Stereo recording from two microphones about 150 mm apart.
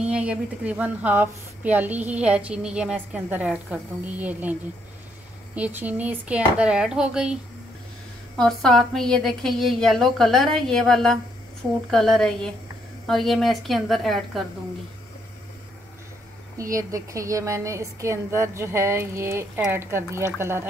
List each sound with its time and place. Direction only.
0.0 s a woman's voice: 5° right (ahead or behind)
8.4 s a woman's voice: 5° left (ahead or behind)
16.5 s a woman's voice: 20° right (ahead or behind)